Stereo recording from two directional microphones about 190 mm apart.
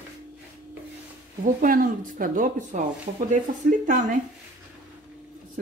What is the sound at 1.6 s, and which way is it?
Speech, 45° right (ahead or behind).